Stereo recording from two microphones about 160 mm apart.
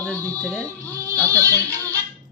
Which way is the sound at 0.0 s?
10° left (ahead or behind).